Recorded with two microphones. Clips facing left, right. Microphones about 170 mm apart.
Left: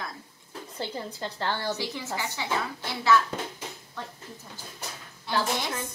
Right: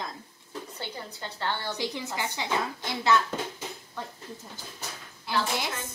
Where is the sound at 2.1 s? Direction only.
20° right (ahead or behind).